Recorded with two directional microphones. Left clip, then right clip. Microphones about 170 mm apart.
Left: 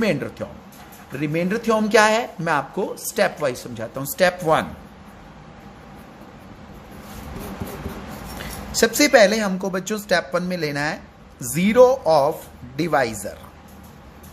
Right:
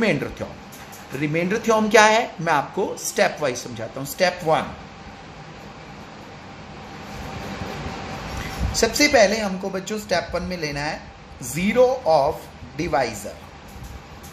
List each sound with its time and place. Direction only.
0.0 s speech: 30° left (ahead or behind); by 4.6 s 50° left (ahead or behind)
8.7 s a woman's voice: 50° left (ahead or behind)